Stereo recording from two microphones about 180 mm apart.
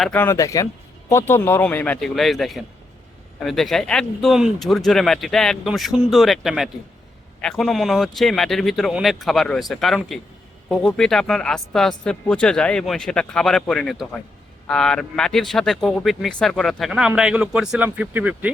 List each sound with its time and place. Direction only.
0.0 s a man's voice: 10° left (ahead or behind); by 18.5 s 10° right (ahead or behind)